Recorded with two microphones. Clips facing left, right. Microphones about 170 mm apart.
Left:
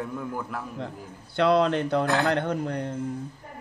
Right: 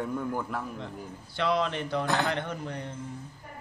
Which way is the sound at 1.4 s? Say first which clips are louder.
Left 6 dB; 60° left (ahead or behind).